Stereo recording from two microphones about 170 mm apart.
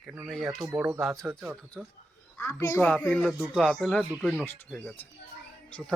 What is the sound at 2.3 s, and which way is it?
Speech, 15° left (ahead or behind).